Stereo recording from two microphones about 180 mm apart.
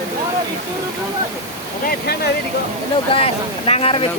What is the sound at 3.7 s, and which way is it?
Speech, 30° left (ahead or behind).